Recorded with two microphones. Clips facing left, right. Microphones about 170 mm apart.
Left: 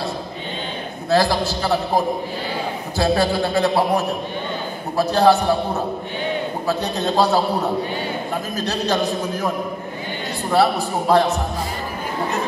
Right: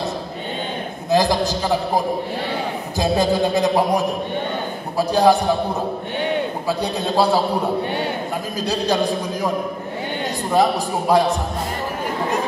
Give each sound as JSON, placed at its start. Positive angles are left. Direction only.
{"t": 1.1, "sound": "a man's voice", "side_deg": -15}
{"t": 6.7, "sound": "a man's voice", "side_deg": -10}
{"t": 8.5, "sound": "a man's voice", "side_deg": -10}
{"t": 10.5, "sound": "a man's voice", "side_deg": -15}